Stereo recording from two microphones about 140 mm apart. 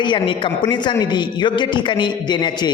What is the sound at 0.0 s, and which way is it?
A man's voice, 35° left (ahead or behind).